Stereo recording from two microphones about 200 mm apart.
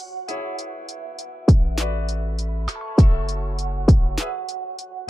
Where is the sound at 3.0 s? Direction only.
Centre (ahead or behind).